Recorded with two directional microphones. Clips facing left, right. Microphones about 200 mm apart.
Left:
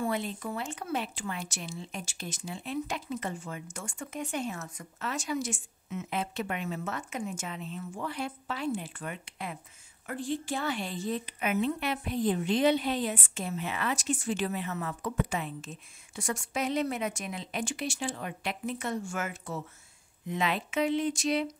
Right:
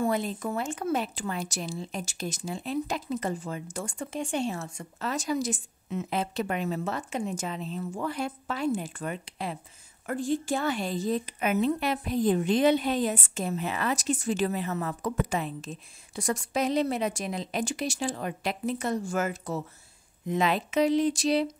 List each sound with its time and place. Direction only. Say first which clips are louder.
0.0 s a woman's voice: right 4 dB; 40° right (ahead or behind)
8.0 s a woman's voice: right 3 dB; 45° right (ahead or behind)